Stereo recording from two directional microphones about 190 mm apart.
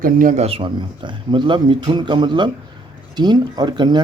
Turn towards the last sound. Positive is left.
turn(degrees=-25)  # may be behind; listen again after turning